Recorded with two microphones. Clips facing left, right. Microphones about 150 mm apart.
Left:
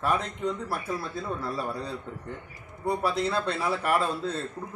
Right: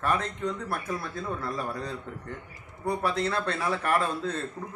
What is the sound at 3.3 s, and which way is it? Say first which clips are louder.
Speech: left 1 dB; 30° left (ahead or behind).